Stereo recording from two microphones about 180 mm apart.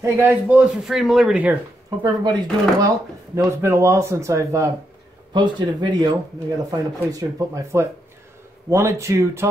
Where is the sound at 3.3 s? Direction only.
15° right (ahead or behind).